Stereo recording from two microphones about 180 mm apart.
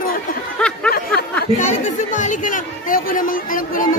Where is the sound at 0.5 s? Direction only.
5° left (ahead or behind).